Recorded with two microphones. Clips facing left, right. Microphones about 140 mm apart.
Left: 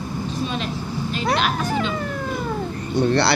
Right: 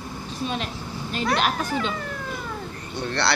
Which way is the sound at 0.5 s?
45° right (ahead or behind).